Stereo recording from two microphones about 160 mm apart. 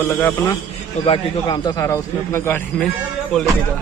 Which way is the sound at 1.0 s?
30° left (ahead or behind).